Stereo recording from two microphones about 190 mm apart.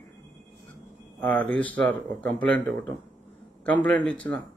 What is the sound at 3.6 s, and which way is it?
Speech, 5° left (ahead or behind).